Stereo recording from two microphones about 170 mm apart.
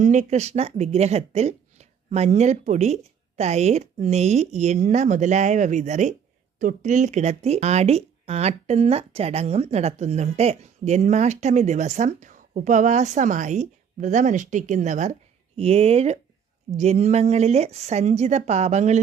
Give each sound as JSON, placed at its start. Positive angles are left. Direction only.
{"t": 0.0, "sound": "speech", "side_deg": -45}